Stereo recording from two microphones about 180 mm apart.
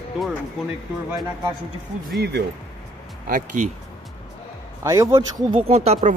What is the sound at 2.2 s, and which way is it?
Speech, 70° right (ahead or behind).